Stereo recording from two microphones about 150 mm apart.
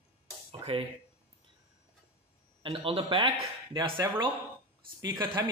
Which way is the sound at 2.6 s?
40° right (ahead or behind).